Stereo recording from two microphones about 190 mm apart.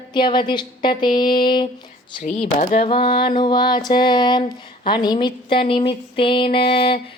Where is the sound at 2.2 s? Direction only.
40° left (ahead or behind).